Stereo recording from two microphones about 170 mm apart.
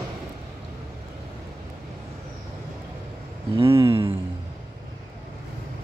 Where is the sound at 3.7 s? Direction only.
15° right (ahead or behind).